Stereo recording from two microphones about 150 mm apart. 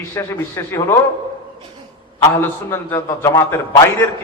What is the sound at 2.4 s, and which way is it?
A man's voice, 15° left (ahead or behind).